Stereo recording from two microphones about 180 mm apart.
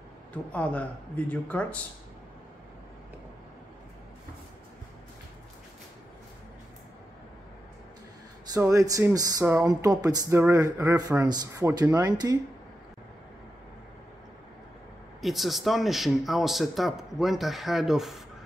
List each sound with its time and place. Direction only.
0.3 s speech: 10° left (ahead or behind)
8.5 s speech: 20° right (ahead or behind)
15.2 s speech: centre (ahead or behind)